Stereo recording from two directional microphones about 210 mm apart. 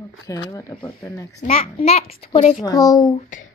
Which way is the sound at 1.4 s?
30° left (ahead or behind).